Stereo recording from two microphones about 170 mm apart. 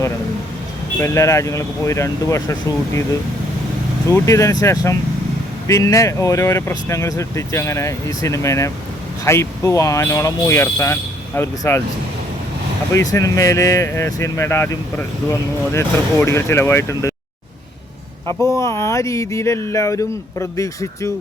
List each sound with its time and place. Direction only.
1.0 s speech: 15° left (ahead or behind)
4.1 s speech: 15° left (ahead or behind)
12.9 s speech: 20° left (ahead or behind)
18.5 s speech: 15° left (ahead or behind)